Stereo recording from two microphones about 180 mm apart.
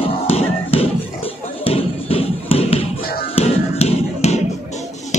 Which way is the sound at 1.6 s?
30° left (ahead or behind).